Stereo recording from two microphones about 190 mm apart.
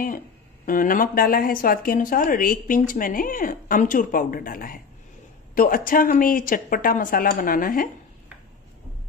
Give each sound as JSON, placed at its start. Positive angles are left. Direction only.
{"t": 0.7, "sound": "speech", "side_deg": 45}